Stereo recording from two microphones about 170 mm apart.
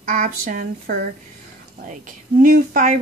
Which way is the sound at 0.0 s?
50° right (ahead or behind).